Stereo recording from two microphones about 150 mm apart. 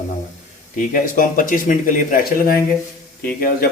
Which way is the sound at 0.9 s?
65° left (ahead or behind).